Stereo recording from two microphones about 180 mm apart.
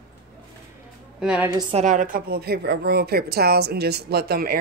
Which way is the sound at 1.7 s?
45° right (ahead or behind).